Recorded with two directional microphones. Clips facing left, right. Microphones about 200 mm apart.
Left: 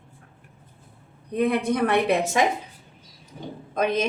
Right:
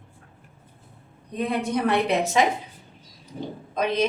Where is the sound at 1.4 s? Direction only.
55° left (ahead or behind).